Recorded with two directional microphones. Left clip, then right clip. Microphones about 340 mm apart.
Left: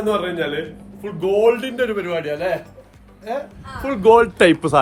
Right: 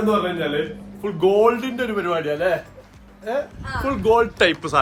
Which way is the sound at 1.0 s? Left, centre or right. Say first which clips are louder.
Even; centre.